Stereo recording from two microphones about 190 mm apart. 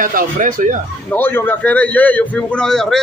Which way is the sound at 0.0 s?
45° right (ahead or behind).